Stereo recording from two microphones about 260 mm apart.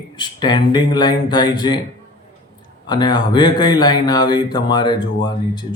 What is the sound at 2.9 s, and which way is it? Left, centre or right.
Speech, centre.